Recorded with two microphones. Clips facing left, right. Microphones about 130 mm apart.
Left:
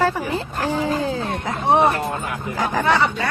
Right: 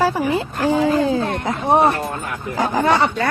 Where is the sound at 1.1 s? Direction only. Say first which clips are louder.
Right 4 dB; 45° right (ahead or behind).